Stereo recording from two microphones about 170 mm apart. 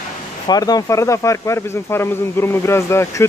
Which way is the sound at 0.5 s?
20° left (ahead or behind).